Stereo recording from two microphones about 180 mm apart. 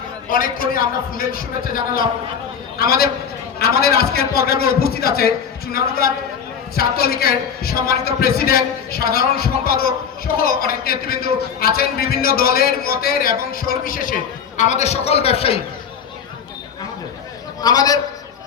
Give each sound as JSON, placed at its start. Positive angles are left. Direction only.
{"t": 0.3, "sound": "a man's voice", "side_deg": 50}
{"t": 6.7, "sound": "a man's voice", "side_deg": 55}
{"t": 17.6, "sound": "a man's voice", "side_deg": 20}